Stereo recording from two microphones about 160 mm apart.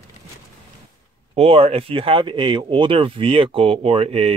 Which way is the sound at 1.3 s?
40° right (ahead or behind).